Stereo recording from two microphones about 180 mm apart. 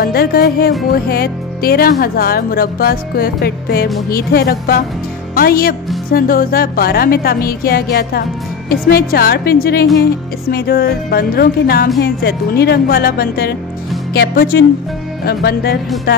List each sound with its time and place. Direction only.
0.0 s speech: 60° left (ahead or behind)